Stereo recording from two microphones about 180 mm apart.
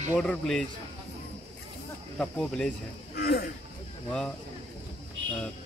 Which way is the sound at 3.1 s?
60° left (ahead or behind).